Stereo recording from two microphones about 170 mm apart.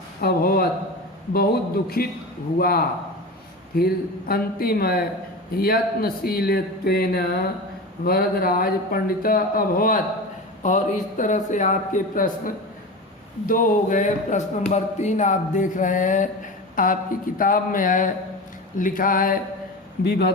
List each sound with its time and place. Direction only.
0.2 s speech: 65° left (ahead or behind)
10.6 s speech: 45° left (ahead or behind)
20.1 s a man's voice: 70° left (ahead or behind)